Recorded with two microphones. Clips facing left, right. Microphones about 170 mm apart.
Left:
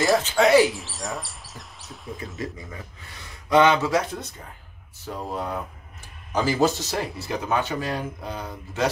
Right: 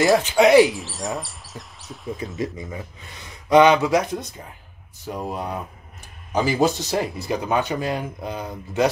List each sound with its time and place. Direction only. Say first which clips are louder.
0.2 s speech: right 4 dB; 20° right (ahead or behind)
0.7 s speech: right 4 dB; centre (ahead or behind)
2.3 s speech: right 5 dB; 20° right (ahead or behind)